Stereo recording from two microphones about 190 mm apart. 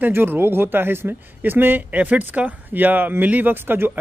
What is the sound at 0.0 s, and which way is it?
A man's voice, 10° right (ahead or behind).